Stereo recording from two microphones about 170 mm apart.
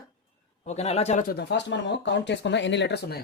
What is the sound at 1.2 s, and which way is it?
Speech, 80° left.